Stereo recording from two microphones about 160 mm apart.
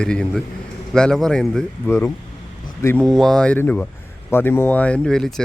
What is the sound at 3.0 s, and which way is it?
A man's voice, centre (ahead or behind).